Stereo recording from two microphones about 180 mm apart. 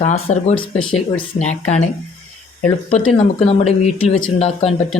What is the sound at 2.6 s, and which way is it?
Speech, 5° left (ahead or behind).